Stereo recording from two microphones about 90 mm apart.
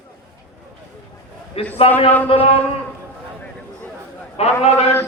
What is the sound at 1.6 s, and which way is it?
Speech, 90° left.